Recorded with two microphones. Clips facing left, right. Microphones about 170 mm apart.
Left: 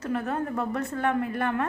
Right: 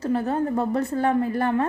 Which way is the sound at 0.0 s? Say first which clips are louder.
Right 5 dB; 30° right (ahead or behind).